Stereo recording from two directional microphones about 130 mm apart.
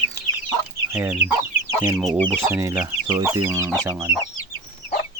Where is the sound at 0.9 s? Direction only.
20° right (ahead or behind).